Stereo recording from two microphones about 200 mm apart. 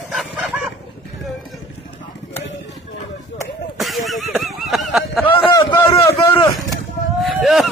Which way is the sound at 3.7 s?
Centre (ahead or behind).